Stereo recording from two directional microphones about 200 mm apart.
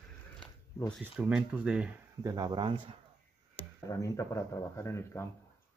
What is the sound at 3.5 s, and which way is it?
Speech, 10° left (ahead or behind).